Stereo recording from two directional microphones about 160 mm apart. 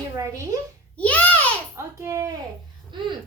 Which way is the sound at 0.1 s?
20° right (ahead or behind).